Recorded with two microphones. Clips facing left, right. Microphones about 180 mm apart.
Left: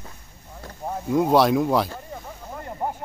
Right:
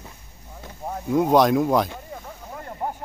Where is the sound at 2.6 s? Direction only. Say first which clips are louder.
Left 1 dB; 10° left (ahead or behind).